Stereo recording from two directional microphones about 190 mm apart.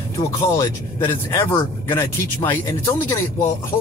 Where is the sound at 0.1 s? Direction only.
15° left (ahead or behind).